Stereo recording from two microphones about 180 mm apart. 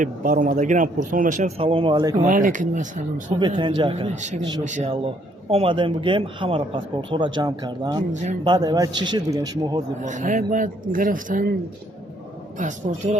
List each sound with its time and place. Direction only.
0.0 s speech: 45° right (ahead or behind); by 2.2 s 20° right (ahead or behind)
2.2 s speech: 45° right (ahead or behind)
3.4 s a man's voice: 25° right (ahead or behind)
8.1 s speech: 40° right (ahead or behind)
8.4 s a man's voice: 20° right (ahead or behind)
10.0 s speech: 45° right (ahead or behind)
12.5 s speech: 45° right (ahead or behind)